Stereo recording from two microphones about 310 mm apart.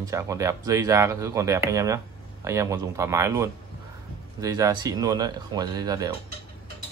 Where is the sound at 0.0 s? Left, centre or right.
Centre.